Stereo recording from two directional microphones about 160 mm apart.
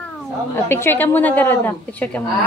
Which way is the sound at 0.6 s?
15° left (ahead or behind).